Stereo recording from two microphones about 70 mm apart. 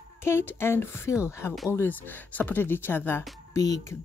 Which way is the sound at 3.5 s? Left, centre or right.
Left.